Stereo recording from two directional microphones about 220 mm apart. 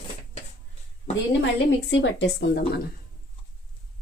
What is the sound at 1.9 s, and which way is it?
Speech, 55° left (ahead or behind).